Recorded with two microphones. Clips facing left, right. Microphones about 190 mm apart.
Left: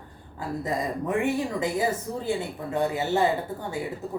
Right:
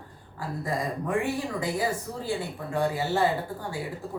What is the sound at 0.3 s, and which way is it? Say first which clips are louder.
Speech: left 2 dB; 20° left (ahead or behind).